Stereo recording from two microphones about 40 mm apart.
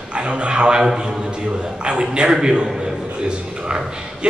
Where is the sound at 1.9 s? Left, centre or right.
Right.